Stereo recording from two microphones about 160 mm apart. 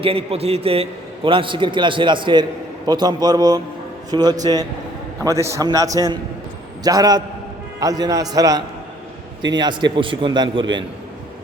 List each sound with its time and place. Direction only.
0.0 s a man's voice: 35° right (ahead or behind)